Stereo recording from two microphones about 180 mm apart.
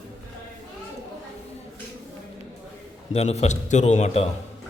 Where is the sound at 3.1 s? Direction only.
35° left (ahead or behind).